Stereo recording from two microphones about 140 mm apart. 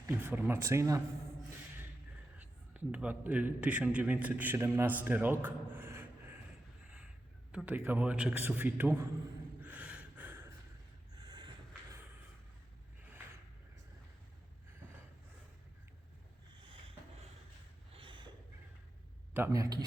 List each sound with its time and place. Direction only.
0.0 s speech: 15° right (ahead or behind)
2.4 s a man's voice: 10° right (ahead or behind)
7.5 s a man's voice: 10° right (ahead or behind)
9.6 s gasp: 10° right (ahead or behind)
11.1 s a sound: 30° right (ahead or behind)
17.9 s a sound: 35° right (ahead or behind)
19.3 s speech: 20° right (ahead or behind)